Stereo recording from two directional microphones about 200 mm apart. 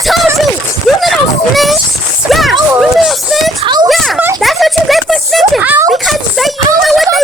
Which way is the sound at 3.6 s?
20° right (ahead or behind).